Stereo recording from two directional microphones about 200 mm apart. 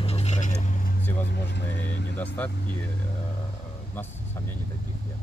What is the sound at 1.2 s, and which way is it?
Vehicle, 60° left (ahead or behind).